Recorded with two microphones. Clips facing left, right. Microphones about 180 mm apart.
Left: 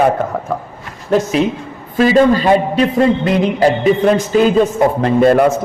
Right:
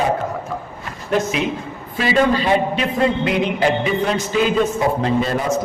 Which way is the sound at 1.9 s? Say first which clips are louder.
Left 6 dB; 45° left (ahead or behind).